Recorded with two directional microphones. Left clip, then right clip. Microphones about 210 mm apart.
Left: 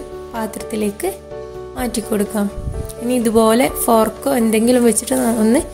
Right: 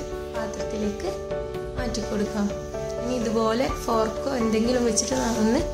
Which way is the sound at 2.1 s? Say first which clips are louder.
Left 10 dB; 35° left (ahead or behind).